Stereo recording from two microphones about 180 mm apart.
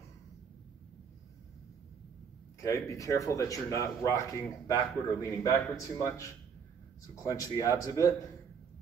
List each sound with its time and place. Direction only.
2.6 s speech: 20° left (ahead or behind)